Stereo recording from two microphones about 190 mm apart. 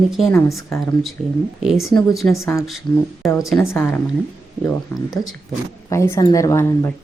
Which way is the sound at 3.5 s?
10° left (ahead or behind).